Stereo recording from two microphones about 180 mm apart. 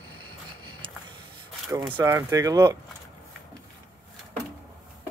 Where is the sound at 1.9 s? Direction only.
15° right (ahead or behind).